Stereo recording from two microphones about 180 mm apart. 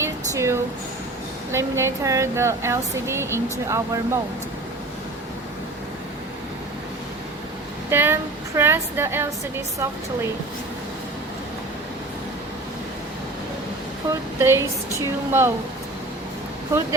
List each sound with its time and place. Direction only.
0.0 s a sound: 15° right (ahead or behind)
1.5 s speech: 15° right (ahead or behind)
7.9 s speech: 15° right (ahead or behind)
14.3 s speech: 15° right (ahead or behind)